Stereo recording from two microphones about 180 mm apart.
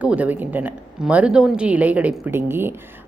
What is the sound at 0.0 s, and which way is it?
A woman's voice, 10° right (ahead or behind).